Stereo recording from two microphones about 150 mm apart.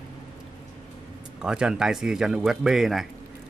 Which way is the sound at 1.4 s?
5° right (ahead or behind).